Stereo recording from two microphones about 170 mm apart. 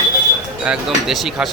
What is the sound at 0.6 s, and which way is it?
Speech, 5° right (ahead or behind).